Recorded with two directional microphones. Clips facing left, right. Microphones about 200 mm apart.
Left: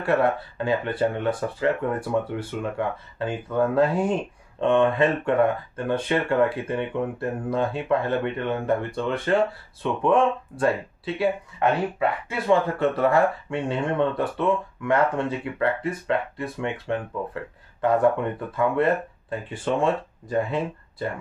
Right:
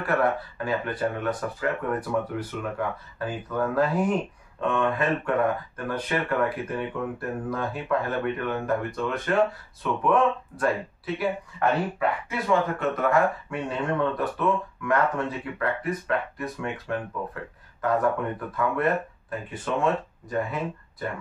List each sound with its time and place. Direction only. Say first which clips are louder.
0.0 s speech: left 3 dB; 25° left (ahead or behind)
12.0 s speech: left 2 dB; 30° left (ahead or behind)
19.5 s speech: left 2 dB; 30° left (ahead or behind)